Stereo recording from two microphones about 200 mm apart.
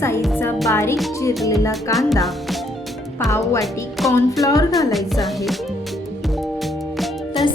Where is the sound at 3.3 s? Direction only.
15° left (ahead or behind).